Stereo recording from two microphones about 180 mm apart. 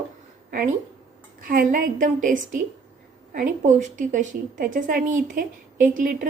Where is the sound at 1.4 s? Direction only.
50° right (ahead or behind).